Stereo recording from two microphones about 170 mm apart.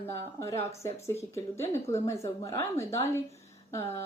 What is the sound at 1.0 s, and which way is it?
A woman's voice, 15° left (ahead or behind).